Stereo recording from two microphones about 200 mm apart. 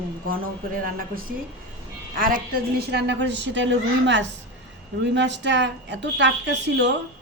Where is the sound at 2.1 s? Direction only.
45° right (ahead or behind).